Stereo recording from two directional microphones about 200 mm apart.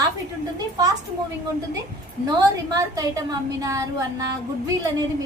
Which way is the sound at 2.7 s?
15° right (ahead or behind).